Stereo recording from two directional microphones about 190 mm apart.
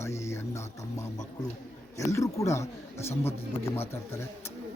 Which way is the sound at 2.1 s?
15° left (ahead or behind).